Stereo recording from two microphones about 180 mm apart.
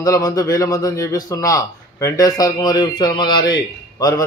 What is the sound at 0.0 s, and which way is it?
A man's voice, 20° left (ahead or behind).